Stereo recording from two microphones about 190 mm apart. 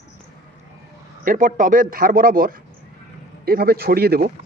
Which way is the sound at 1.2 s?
45° right (ahead or behind).